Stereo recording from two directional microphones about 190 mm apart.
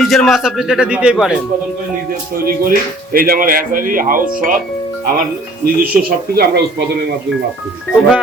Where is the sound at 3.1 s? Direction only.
50° right (ahead or behind).